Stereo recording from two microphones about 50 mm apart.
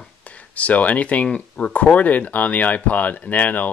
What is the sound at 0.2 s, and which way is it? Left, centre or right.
Speech, left.